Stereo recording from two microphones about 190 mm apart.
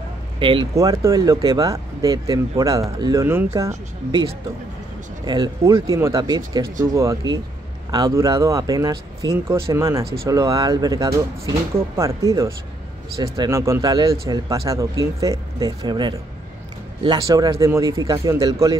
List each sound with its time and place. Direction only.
0.4 s speech: 25° right (ahead or behind)